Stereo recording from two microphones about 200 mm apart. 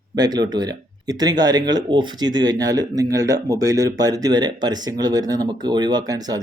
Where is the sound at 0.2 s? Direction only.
20° right (ahead or behind).